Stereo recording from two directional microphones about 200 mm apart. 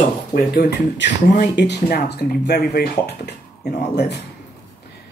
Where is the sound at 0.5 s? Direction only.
50° left (ahead or behind).